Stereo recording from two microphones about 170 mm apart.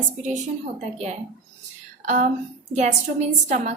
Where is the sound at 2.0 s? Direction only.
45° right (ahead or behind).